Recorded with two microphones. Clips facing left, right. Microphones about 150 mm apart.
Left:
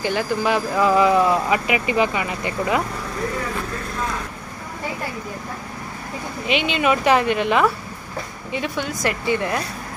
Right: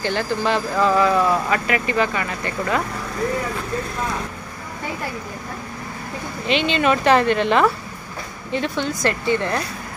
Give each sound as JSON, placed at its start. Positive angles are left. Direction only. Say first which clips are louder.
{"t": 0.0, "sound": "speech", "louder": "even", "side_deg": 5}
{"t": 6.4, "sound": "speech", "louder": "right 1 dB", "side_deg": 10}